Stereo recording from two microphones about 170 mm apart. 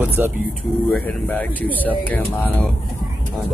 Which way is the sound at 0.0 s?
10° right (ahead or behind).